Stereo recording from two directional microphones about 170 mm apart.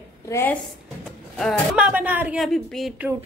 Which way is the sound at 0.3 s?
15° left (ahead or behind).